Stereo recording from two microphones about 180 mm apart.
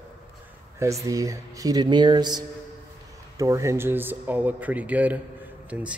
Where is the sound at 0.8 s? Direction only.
15° right (ahead or behind).